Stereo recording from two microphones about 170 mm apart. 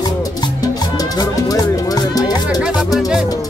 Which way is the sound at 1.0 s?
20° left (ahead or behind).